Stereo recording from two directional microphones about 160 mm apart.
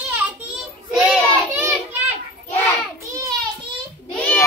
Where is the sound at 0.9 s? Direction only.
5° right (ahead or behind).